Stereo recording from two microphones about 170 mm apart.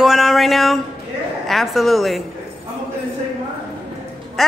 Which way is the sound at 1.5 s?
Centre (ahead or behind).